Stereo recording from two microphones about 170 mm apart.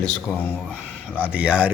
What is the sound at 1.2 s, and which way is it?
Speech, 10° right (ahead or behind).